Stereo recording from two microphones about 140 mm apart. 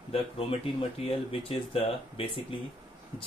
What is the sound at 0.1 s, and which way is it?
Speech, 40° left (ahead or behind).